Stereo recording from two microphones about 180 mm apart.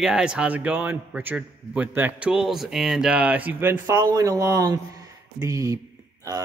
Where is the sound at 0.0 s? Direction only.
5° right (ahead or behind).